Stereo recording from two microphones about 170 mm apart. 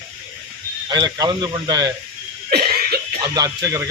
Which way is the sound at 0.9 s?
20° right (ahead or behind).